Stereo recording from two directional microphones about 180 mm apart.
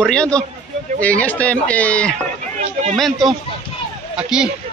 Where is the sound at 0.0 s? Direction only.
5° left (ahead or behind).